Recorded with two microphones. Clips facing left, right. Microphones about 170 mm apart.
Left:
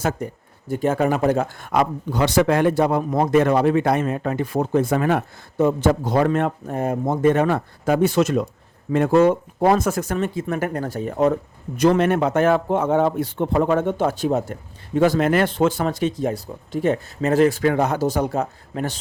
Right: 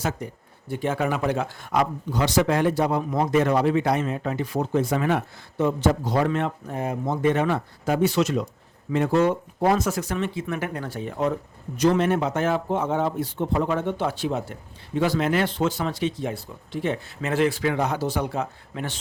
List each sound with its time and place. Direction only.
0.2 s speech: 45° left (ahead or behind)
11.8 s speech: 60° left (ahead or behind); by 18.9 s 40° left (ahead or behind)